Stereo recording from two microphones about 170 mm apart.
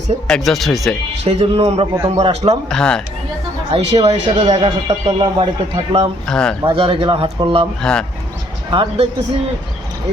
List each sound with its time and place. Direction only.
0.3 s speech: centre (ahead or behind)
1.2 s speech: 35° right (ahead or behind)
1.9 s a man's voice: 20° right (ahead or behind)
2.1 s speech: 40° right (ahead or behind)
2.6 s speech: 5° left (ahead or behind)
3.7 s speech: 35° right (ahead or behind)
5.0 s speech: 25° right (ahead or behind)
6.2 s speech: 5° left (ahead or behind)
6.7 s speech: 30° right (ahead or behind)
7.8 s speech: 5° left (ahead or behind)
8.7 s speech: 30° right (ahead or behind)